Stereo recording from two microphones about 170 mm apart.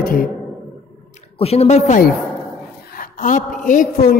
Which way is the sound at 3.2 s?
50° left (ahead or behind).